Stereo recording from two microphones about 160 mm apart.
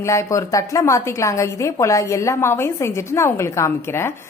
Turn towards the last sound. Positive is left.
turn(degrees=15)  # may be behind; listen again after turning